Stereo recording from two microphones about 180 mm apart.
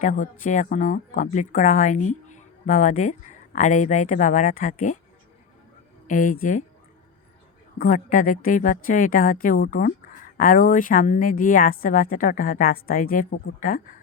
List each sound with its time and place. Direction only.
0.0 s speech: 45° left (ahead or behind)
6.1 s speech: 45° left (ahead or behind)
7.8 s speech: 50° left (ahead or behind)